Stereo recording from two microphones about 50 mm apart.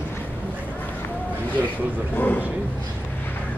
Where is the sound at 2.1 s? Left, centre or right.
Left.